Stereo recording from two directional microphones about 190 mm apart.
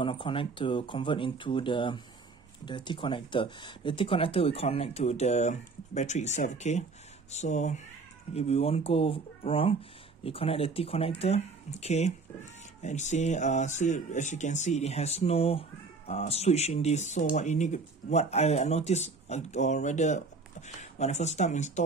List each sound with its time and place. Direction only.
0.0 s speech: 25° left (ahead or behind)